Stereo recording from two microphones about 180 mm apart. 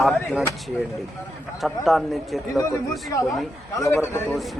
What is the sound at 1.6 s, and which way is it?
Speech, centre (ahead or behind).